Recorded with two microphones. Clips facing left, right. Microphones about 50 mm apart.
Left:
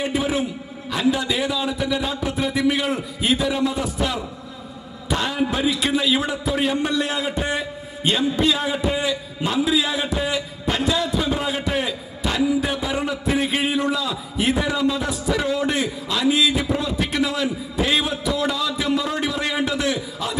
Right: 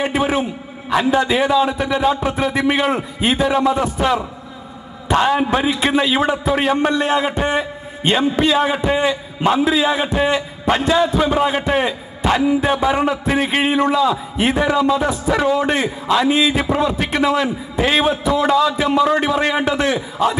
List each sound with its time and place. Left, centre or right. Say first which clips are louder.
0.0 s a man's voice: right 4 dB; right